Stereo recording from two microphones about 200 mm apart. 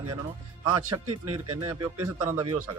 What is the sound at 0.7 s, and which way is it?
Speech, 20° right (ahead or behind).